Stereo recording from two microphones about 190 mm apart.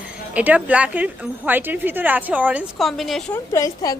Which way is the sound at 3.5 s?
15° left (ahead or behind).